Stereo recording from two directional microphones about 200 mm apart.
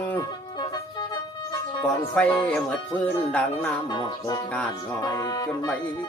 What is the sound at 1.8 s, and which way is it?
Speech, 5° left (ahead or behind).